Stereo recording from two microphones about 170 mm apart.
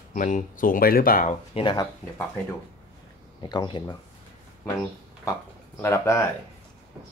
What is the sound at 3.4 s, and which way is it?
Speech, 25° left (ahead or behind).